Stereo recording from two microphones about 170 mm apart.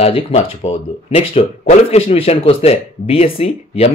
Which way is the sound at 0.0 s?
35° left (ahead or behind).